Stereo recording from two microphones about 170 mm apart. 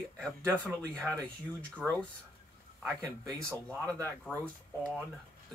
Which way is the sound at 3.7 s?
15° right (ahead or behind).